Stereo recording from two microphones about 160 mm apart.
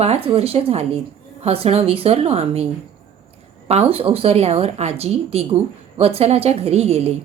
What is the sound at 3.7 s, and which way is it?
Speech, 40° right (ahead or behind).